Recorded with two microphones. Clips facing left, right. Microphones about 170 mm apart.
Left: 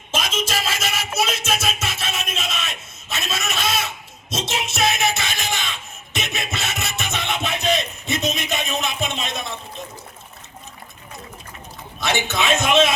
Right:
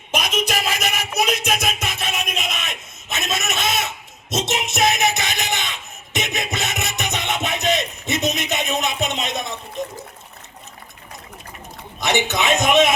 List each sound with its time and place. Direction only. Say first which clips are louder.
0.1 s music: right 2 dB; 15° right (ahead or behind)
9.8 s water: right 7 dB; 15° right (ahead or behind)
11.9 s a sound: right 2 dB; 20° right (ahead or behind)